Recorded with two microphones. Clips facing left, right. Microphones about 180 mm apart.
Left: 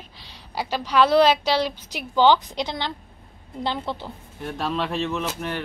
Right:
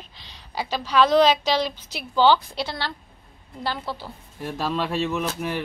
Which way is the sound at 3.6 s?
20° left (ahead or behind).